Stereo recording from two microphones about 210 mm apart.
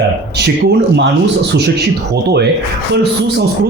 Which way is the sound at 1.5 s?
50° right (ahead or behind).